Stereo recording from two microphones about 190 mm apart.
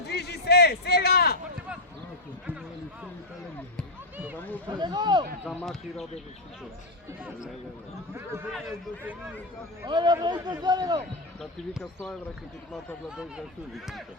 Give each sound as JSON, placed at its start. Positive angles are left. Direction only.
{"t": 0.1, "sound": "a sound", "side_deg": 60}
{"t": 4.4, "sound": "a sound", "side_deg": 10}
{"t": 4.8, "sound": "a man's voice", "side_deg": -25}
{"t": 5.5, "sound": "speech", "side_deg": 0}
{"t": 8.1, "sound": "speech", "side_deg": -10}
{"t": 9.8, "sound": "a man's voice", "side_deg": -25}
{"t": 11.3, "sound": "speech", "side_deg": 0}